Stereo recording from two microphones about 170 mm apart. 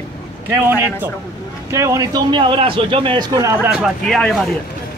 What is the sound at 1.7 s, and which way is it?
A man's voice, 15° right (ahead or behind).